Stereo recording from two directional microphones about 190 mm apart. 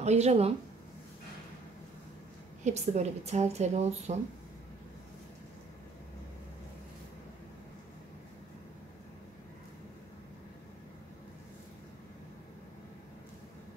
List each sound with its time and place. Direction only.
0.0 s a woman's voice: 35° right (ahead or behind)
2.6 s a woman's voice: 35° right (ahead or behind)